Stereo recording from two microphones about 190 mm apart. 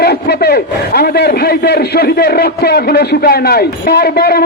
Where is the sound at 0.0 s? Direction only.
55° left (ahead or behind).